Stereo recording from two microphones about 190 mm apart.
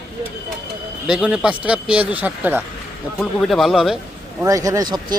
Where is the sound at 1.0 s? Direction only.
5° right (ahead or behind).